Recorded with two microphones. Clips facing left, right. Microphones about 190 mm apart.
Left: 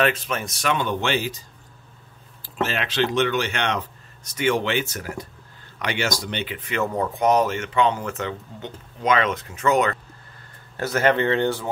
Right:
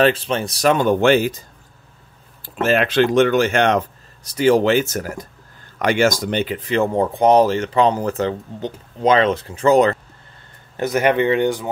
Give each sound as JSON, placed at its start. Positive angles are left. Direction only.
{"t": 0.0, "sound": "speech", "side_deg": -30}
{"t": 2.4, "sound": "speech", "side_deg": -50}
{"t": 10.8, "sound": "speech", "side_deg": -15}